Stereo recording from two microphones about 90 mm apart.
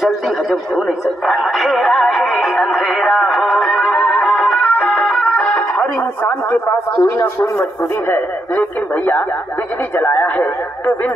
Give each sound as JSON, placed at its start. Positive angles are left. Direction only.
{"t": 0.5, "sound": "music", "side_deg": 0}
{"t": 6.2, "sound": "speech", "side_deg": 25}
{"t": 8.1, "sound": "speech", "side_deg": 20}